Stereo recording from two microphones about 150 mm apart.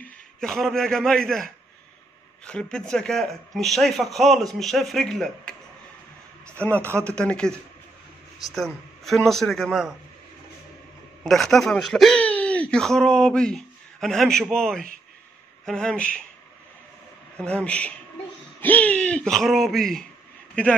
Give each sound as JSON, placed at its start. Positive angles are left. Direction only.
{"t": 0.0, "sound": "a man's voice", "side_deg": 0}
{"t": 6.8, "sound": "speech", "side_deg": -15}
{"t": 7.1, "sound": "a man's voice", "side_deg": 5}
{"t": 11.2, "sound": "a man's voice", "side_deg": 0}
{"t": 17.4, "sound": "a man's voice", "side_deg": 10}